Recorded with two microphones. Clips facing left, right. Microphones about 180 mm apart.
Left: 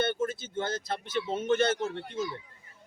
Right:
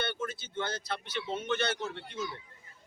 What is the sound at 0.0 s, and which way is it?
Speech, 45° left (ahead or behind).